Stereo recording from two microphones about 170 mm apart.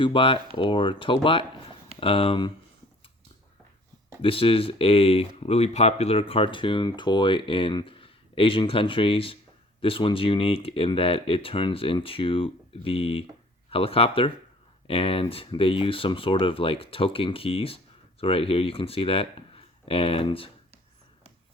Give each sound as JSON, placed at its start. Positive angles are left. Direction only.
{"t": 0.0, "sound": "speech", "side_deg": 30}
{"t": 4.2, "sound": "speech", "side_deg": 30}